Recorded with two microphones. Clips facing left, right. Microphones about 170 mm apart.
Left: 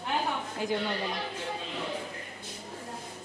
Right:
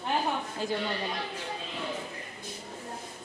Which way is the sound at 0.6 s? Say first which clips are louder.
Left 2 dB; 15° left (ahead or behind).